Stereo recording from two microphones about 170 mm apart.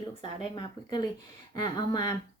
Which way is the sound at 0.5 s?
25° left (ahead or behind).